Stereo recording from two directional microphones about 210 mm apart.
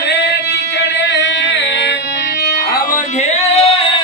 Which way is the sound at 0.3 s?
55° left (ahead or behind).